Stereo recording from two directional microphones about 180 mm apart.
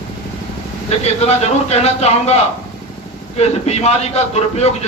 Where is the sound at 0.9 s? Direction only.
35° left (ahead or behind).